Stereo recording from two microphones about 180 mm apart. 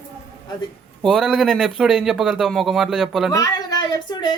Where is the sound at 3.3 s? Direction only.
20° left (ahead or behind).